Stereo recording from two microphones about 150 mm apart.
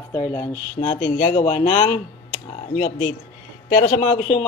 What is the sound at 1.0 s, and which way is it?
Speech, 35° left (ahead or behind).